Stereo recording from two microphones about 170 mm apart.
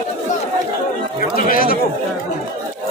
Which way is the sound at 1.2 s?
55° left (ahead or behind).